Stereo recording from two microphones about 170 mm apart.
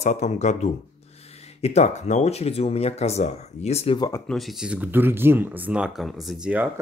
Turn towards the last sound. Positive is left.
turn(degrees=-5)  # may be behind; listen again after turning